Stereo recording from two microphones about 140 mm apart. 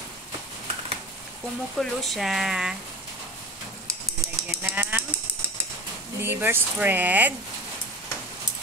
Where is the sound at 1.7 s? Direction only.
Centre (ahead or behind).